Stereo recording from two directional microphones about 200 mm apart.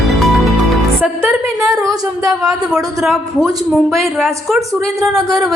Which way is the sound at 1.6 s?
15° right (ahead or behind).